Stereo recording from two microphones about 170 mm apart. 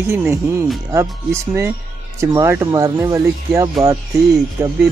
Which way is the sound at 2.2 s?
15° right (ahead or behind).